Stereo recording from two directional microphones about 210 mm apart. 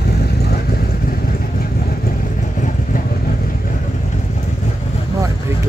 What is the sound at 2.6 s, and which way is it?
Vehicle, 40° left (ahead or behind).